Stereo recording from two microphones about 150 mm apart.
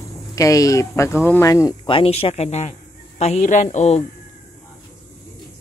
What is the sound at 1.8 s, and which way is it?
A man's voice, 35° left (ahead or behind).